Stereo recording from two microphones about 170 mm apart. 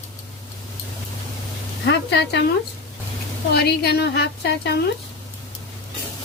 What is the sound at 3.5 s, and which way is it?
A woman's voice, 70° left (ahead or behind).